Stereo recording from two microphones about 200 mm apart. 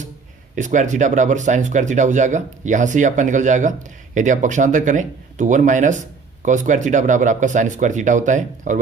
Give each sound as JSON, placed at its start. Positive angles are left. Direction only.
{"t": 0.5, "sound": "speech", "side_deg": -40}